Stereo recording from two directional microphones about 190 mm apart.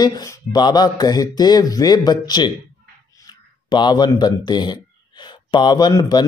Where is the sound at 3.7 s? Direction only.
20° left (ahead or behind).